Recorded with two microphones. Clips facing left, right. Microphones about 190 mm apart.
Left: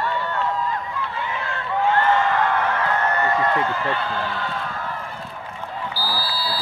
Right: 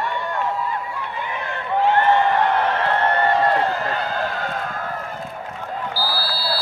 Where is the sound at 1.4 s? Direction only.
20° right (ahead or behind); by 4.9 s 45° right (ahead or behind).